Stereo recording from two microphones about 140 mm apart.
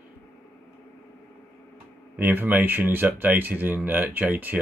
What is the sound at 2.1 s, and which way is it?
Speech, 15° right (ahead or behind).